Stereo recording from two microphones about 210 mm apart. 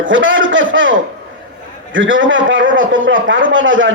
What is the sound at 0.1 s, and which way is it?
Speech, 65° right (ahead or behind).